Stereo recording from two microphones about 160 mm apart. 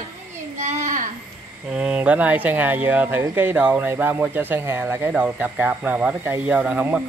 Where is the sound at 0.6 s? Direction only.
50° right (ahead or behind).